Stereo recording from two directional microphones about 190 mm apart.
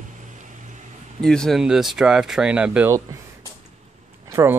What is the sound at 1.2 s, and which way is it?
Speech, 5° left (ahead or behind).